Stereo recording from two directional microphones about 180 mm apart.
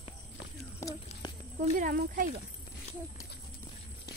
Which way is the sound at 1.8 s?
50° right (ahead or behind).